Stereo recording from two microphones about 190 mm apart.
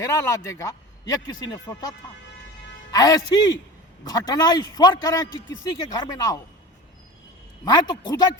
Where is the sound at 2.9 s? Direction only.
20° left (ahead or behind).